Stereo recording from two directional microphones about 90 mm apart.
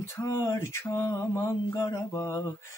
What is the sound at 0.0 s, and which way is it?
Male singing, 35° left (ahead or behind).